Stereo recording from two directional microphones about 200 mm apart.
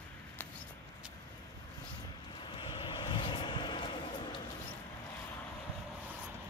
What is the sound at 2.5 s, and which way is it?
Vehicle, 25° left (ahead or behind).